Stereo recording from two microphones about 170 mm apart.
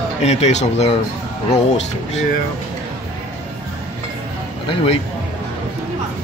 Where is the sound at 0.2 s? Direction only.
40° left (ahead or behind).